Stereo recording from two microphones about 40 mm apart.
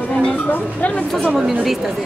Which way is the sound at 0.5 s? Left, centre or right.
Left.